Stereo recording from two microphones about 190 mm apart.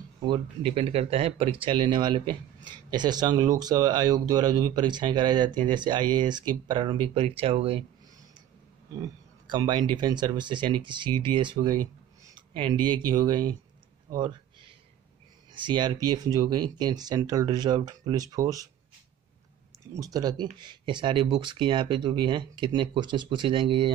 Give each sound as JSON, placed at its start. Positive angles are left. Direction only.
{"t": 0.2, "sound": "speech", "side_deg": -25}
{"t": 9.5, "sound": "speech", "side_deg": -20}
{"t": 15.5, "sound": "speech", "side_deg": -25}
{"t": 19.9, "sound": "speech", "side_deg": -20}